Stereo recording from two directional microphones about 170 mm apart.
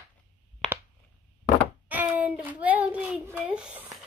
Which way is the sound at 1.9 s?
10° right (ahead or behind).